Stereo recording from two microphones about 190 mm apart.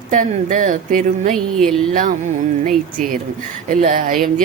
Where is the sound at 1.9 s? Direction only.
45° right (ahead or behind).